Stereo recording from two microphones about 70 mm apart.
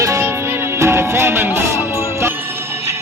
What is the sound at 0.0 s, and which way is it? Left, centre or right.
Music, right.